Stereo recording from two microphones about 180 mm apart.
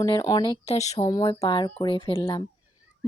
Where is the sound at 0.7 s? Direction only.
40° left (ahead or behind).